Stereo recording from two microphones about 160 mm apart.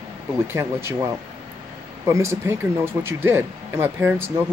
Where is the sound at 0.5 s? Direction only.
15° right (ahead or behind).